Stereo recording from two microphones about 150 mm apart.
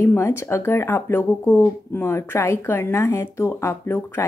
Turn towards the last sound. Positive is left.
turn(degrees=15)  # may be behind; listen again after turning